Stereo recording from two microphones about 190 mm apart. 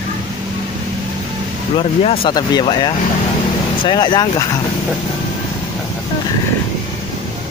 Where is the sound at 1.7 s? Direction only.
30° left (ahead or behind).